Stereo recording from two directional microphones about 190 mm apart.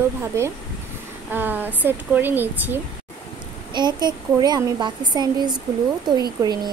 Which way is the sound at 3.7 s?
20° right (ahead or behind).